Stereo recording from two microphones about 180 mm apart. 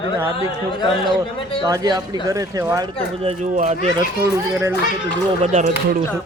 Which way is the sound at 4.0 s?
15° right (ahead or behind).